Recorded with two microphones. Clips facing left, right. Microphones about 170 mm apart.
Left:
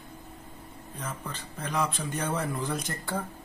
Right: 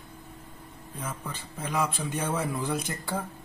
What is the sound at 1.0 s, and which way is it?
Speech, 10° right (ahead or behind).